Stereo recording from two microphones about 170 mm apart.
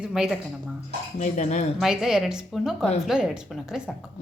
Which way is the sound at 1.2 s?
45° left (ahead or behind).